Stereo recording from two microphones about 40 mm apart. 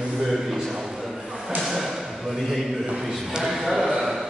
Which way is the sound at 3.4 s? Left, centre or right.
Centre.